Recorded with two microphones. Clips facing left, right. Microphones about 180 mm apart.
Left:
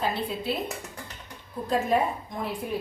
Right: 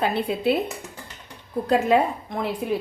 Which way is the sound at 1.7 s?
75° right (ahead or behind).